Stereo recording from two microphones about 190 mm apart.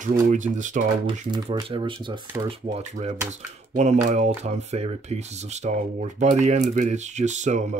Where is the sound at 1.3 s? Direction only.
25° right (ahead or behind).